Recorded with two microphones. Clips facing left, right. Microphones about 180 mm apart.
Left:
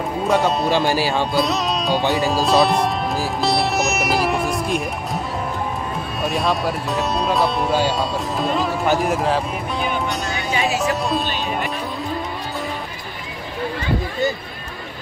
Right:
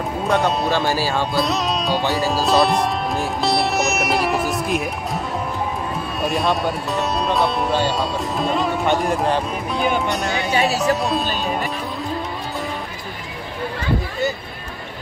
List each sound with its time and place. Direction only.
0.3 s speech: centre (ahead or behind)
0.7 s speech: 15° left (ahead or behind)
1.3 s music: centre (ahead or behind)
2.1 s speech: centre (ahead or behind)
6.2 s speech: centre (ahead or behind)
10.5 s music: 35° right (ahead or behind)
10.8 s music: centre (ahead or behind)